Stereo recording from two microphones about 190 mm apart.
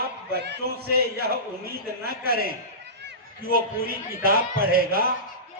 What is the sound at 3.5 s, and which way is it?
A man's voice, 50° right (ahead or behind).